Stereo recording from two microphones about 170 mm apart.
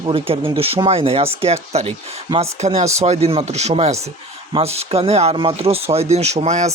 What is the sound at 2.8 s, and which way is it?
Speech, 20° right (ahead or behind).